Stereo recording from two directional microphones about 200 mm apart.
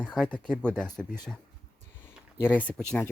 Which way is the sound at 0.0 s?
5° left (ahead or behind).